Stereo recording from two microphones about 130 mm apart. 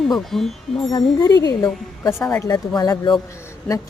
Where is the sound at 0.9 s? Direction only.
25° left (ahead or behind).